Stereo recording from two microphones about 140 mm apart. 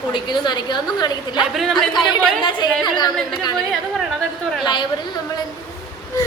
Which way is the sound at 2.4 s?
35° left (ahead or behind).